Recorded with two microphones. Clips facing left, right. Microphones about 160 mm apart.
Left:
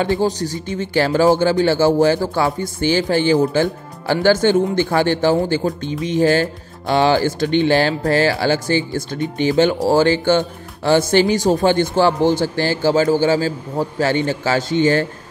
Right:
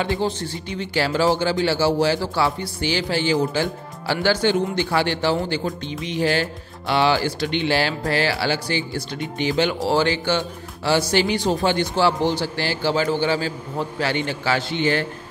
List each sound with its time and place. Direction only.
0.4 s speech: 45° left (ahead or behind)